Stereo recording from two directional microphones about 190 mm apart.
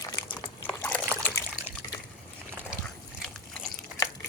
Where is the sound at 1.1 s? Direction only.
15° right (ahead or behind).